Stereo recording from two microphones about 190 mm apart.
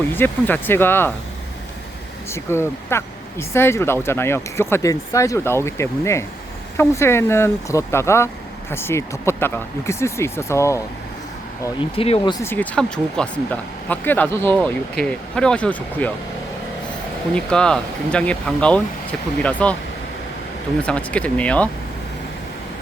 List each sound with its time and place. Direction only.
0.1 s speech: 10° left (ahead or behind)
2.3 s speech: 15° left (ahead or behind)
11.9 s speech: 30° left (ahead or behind)
12.5 s speech: 5° left (ahead or behind)
17.3 s speech: 5° left (ahead or behind)
20.8 s speech: 5° left (ahead or behind)